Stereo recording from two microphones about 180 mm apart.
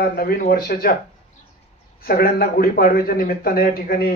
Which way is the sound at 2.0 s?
55° left (ahead or behind).